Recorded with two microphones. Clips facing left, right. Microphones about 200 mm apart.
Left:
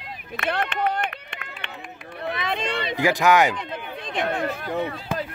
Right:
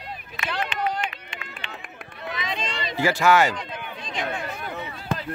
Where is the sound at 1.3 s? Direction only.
60° left (ahead or behind).